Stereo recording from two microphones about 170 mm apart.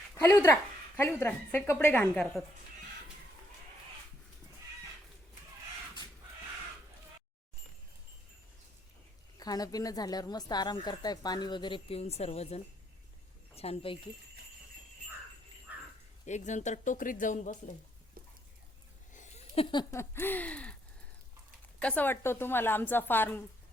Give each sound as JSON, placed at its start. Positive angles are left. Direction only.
{"t": 0.1, "sound": "a woman's voice", "side_deg": 15}
{"t": 9.4, "sound": "a woman's voice", "side_deg": 20}
{"t": 15.7, "sound": "a sound", "side_deg": -10}
{"t": 16.2, "sound": "speech", "side_deg": 45}
{"t": 19.1, "sound": "a sound", "side_deg": 45}
{"t": 19.7, "sound": "a woman's voice", "side_deg": 15}
{"t": 21.8, "sound": "a woman's voice", "side_deg": 10}